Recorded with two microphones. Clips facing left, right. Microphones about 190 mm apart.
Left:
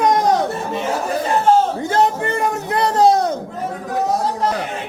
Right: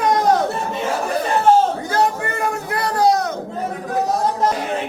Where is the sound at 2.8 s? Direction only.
25° left (ahead or behind).